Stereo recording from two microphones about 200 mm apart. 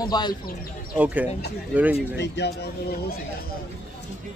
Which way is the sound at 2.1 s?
60° left (ahead or behind).